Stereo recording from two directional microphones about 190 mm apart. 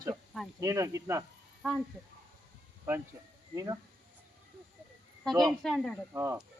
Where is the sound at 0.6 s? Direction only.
15° right (ahead or behind).